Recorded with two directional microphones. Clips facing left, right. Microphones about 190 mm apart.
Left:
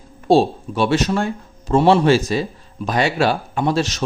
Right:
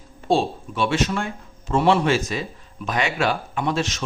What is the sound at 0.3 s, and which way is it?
A man's voice, 40° left (ahead or behind).